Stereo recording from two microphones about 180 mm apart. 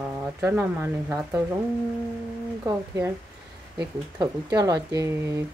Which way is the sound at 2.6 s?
20° right (ahead or behind).